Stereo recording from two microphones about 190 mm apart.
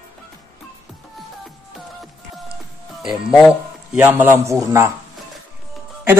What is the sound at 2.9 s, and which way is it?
A man's voice, centre (ahead or behind).